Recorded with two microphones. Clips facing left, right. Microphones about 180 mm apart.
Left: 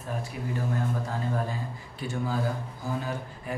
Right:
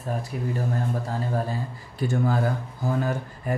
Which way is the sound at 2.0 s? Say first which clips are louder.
Right 6 dB; 50° right (ahead or behind).